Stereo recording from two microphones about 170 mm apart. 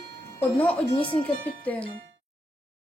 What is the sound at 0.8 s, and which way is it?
Speech, 30° left (ahead or behind).